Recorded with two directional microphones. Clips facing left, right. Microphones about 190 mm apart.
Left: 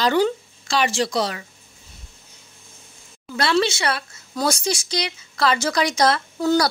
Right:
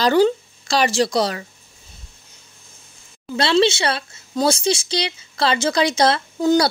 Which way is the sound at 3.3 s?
25° right (ahead or behind).